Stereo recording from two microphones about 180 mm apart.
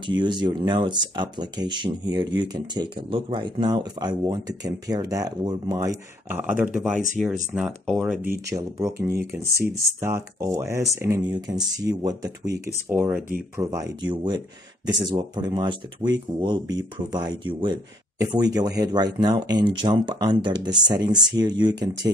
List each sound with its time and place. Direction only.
0.2 s speech: 25° right (ahead or behind); by 8.2 s centre (ahead or behind)
8.5 s speech: 20° right (ahead or behind)